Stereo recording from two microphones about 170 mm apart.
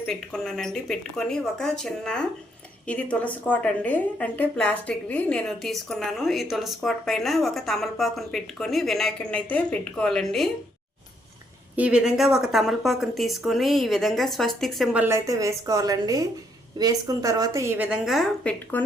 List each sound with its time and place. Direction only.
0.0 s a woman's voice: 5° left (ahead or behind)
11.8 s a woman's voice: 5° right (ahead or behind)
15.0 s a woman's voice: 15° right (ahead or behind); by 18.9 s 10° left (ahead or behind)